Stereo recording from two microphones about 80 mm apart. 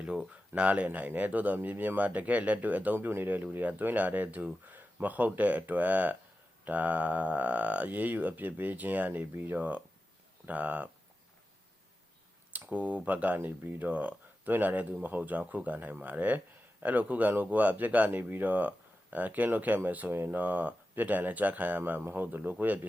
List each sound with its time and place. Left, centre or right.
0.5 s speech: centre
12.5 s speech: centre